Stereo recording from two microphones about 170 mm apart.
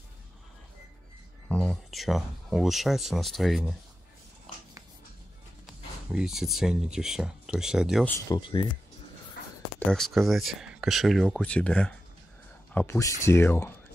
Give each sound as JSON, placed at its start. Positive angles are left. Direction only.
{"t": 1.5, "sound": "speech", "side_deg": 5}
{"t": 5.7, "sound": "speech", "side_deg": 0}
{"t": 8.3, "sound": "speech", "side_deg": 30}
{"t": 9.8, "sound": "speech", "side_deg": 0}